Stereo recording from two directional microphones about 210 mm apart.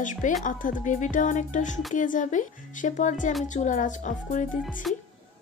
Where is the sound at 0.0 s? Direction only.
40° left (ahead or behind).